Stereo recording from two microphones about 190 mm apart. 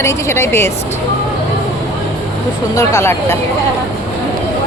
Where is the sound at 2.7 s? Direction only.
15° left (ahead or behind).